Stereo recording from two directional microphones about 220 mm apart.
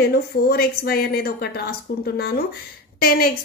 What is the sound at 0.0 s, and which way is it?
A woman's voice, 45° left (ahead or behind).